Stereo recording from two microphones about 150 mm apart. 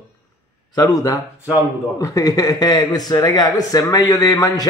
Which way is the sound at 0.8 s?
25° left (ahead or behind).